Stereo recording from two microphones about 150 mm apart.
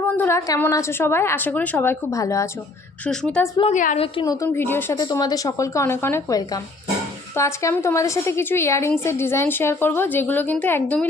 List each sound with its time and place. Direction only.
0.2 s a woman's voice: 20° left (ahead or behind)
3.6 s a woman's voice: 55° left (ahead or behind)
3.9 s a woman's voice: 40° left (ahead or behind)
4.3 s a woman's voice: 20° left (ahead or behind)
5.0 s a woman's voice: 25° left (ahead or behind); by 11.1 s 10° left (ahead or behind)